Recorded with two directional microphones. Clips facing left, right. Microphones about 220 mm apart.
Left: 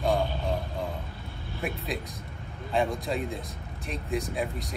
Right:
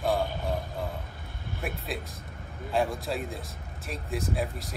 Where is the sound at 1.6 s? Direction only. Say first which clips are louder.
Left 2 dB; centre (ahead or behind).